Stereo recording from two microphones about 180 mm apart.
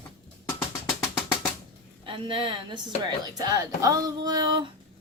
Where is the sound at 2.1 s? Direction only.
30° right (ahead or behind).